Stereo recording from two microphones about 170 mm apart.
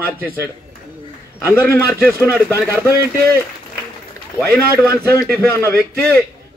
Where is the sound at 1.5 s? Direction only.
15° left (ahead or behind).